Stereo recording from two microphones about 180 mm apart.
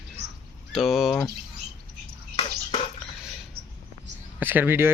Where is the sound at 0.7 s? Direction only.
Centre (ahead or behind).